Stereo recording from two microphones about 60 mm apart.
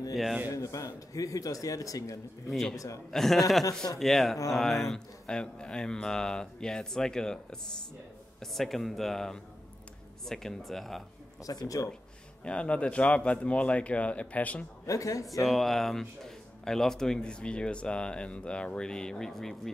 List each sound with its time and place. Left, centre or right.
0.1 s speech: centre
0.5 s a man's voice: left
2.5 s speech: centre
8.4 s speech: centre
11.4 s a man's voice: left
12.4 s a man's voice: centre
14.9 s a man's voice: left
15.4 s speech: centre